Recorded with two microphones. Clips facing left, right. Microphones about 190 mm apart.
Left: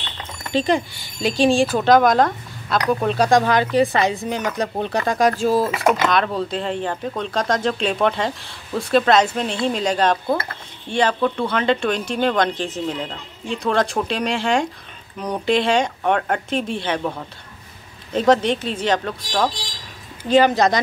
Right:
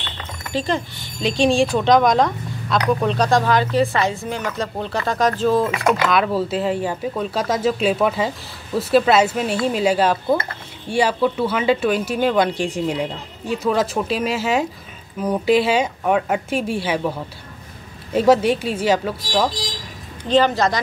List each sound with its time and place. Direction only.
0.5 s speech: 20° left (ahead or behind); by 3.3 s 5° left (ahead or behind)
3.3 s speech: 15° left (ahead or behind); by 17.1 s 5° right (ahead or behind)
18.1 s speech: 10° right (ahead or behind)
20.2 s speech: 10° left (ahead or behind)